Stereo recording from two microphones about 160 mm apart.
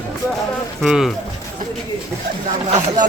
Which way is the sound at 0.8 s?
Centre (ahead or behind).